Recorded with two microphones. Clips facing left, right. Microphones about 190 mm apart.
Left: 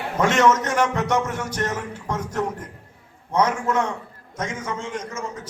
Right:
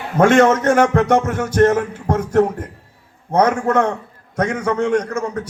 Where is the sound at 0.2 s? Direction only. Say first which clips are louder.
Right 6 dB; 55° right (ahead or behind).